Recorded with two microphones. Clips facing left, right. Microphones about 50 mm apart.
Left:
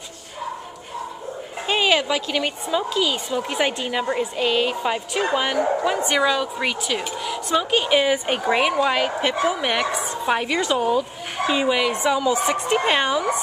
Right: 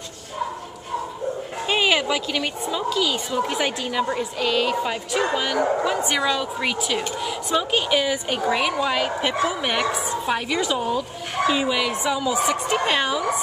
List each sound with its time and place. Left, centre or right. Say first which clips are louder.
1.7 s a woman's voice: left 1 dB; centre
5.9 s a woman's voice: left 2 dB; centre
7.9 s a woman's voice: left 3 dB; left